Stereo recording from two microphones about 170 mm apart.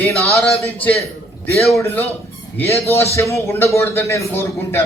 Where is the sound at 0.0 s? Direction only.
5° left (ahead or behind).